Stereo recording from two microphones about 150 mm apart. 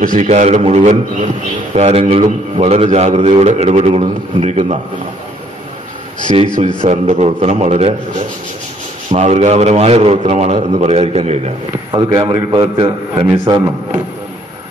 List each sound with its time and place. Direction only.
0.0 s a man's voice: 60° right (ahead or behind); by 4.7 s 45° right (ahead or behind)
6.3 s a man's voice: 35° right (ahead or behind)
11.9 s a man's voice: 35° right (ahead or behind)